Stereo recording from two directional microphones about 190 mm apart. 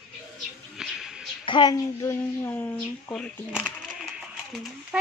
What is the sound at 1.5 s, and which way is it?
Speech, 20° left (ahead or behind).